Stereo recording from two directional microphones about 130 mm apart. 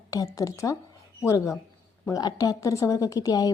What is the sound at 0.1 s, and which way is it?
A woman's voice, 25° left (ahead or behind).